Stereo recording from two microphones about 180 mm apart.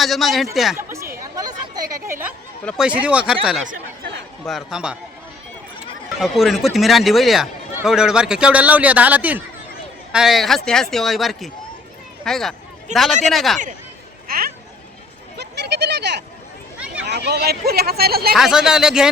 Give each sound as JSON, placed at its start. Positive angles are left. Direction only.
{"t": 0.0, "sound": "speech", "side_deg": 0}
{"t": 0.8, "sound": "chatter", "side_deg": -15}
{"t": 1.4, "sound": "a sound", "side_deg": -20}
{"t": 2.0, "sound": "speech", "side_deg": -15}
{"t": 2.6, "sound": "speech", "side_deg": -5}
{"t": 3.7, "sound": "chatter", "side_deg": -65}
{"t": 4.4, "sound": "speech", "side_deg": 0}
{"t": 6.1, "sound": "speech", "side_deg": 0}
{"t": 14.3, "sound": "a sound", "side_deg": -55}
{"t": 15.4, "sound": "a sound", "side_deg": -65}
{"t": 16.8, "sound": "a sound", "side_deg": -5}
{"t": 17.1, "sound": "speech", "side_deg": -70}
{"t": 18.3, "sound": "speech", "side_deg": -5}